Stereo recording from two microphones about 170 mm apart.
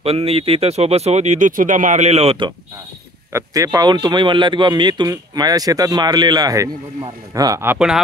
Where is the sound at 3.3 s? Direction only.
20° right (ahead or behind).